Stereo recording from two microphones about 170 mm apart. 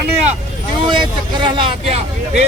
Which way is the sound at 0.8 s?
30° right (ahead or behind).